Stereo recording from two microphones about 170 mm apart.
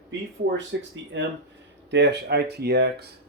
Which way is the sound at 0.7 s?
90° right.